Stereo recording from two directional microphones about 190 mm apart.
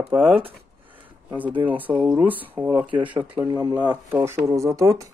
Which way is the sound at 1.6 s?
10° right (ahead or behind).